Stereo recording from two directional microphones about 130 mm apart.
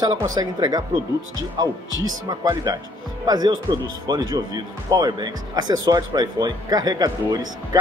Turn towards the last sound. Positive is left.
turn(degrees=-30)  # may be behind; listen again after turning